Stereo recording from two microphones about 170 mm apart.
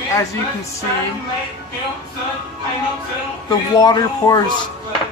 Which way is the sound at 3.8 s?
25° left (ahead or behind).